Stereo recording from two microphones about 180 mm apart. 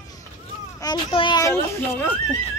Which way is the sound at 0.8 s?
25° left (ahead or behind).